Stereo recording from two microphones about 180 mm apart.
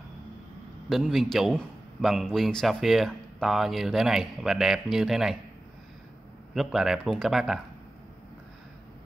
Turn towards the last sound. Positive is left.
turn(degrees=0)  # may be behind; listen again after turning